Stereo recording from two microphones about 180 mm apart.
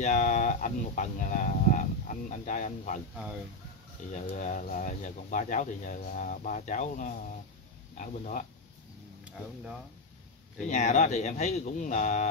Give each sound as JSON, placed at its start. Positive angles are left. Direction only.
{"t": 0.0, "sound": "speech", "side_deg": 40}
{"t": 4.1, "sound": "speech", "side_deg": 40}
{"t": 10.7, "sound": "speech", "side_deg": 45}